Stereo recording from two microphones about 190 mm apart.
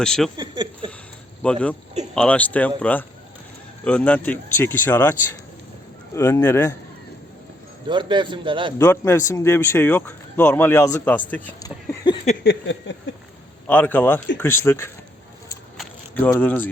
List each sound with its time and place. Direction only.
0.0 s speech: 5° left (ahead or behind)
0.3 s a man's voice: 25° right (ahead or behind)
1.4 s speech: 5° left (ahead or behind)
7.9 s a man's voice: 25° right (ahead or behind)
8.8 s speech: 15° left (ahead or behind)
12.4 s a sound: 65° left (ahead or behind)
13.7 s speech: 10° left (ahead or behind)
15.8 s a sound: 10° left (ahead or behind)